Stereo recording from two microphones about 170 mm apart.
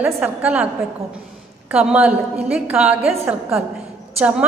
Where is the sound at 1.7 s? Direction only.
5° right (ahead or behind).